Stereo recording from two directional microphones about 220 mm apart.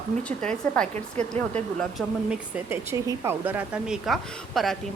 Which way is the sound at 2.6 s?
10° right (ahead or behind).